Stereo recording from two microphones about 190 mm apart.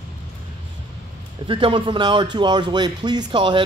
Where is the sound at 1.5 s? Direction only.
25° right (ahead or behind).